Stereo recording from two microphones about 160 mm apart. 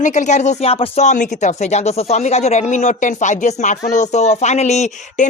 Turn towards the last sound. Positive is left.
turn(degrees=45)  # may be behind; listen again after turning